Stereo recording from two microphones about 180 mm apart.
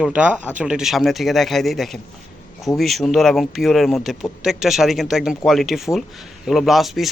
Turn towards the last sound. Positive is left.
turn(degrees=0)  # may be behind; listen again after turning